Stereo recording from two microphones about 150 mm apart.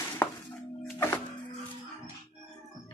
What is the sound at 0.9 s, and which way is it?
Music, 15° left (ahead or behind).